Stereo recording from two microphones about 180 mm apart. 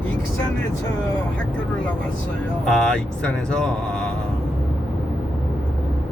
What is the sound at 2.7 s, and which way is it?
Speech, 5° left (ahead or behind).